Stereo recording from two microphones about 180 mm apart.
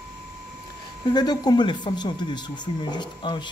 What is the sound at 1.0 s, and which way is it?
Speech, 25° left (ahead or behind).